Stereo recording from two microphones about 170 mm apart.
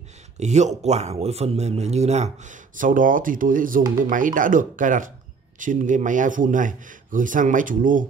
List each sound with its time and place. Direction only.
0.4 s a man's voice: 40° right (ahead or behind)